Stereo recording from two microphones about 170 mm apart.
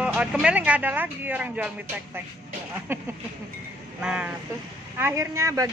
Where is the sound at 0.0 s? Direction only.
5° right (ahead or behind).